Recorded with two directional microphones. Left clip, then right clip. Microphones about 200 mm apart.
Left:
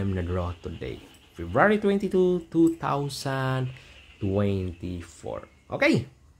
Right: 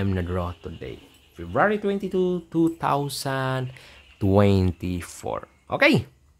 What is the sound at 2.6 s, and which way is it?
Speech, 20° right (ahead or behind).